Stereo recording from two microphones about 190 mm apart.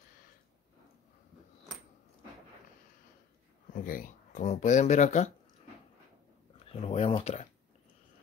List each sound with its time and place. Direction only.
3.7 s speech: 50° left (ahead or behind)
6.6 s speech: 30° left (ahead or behind)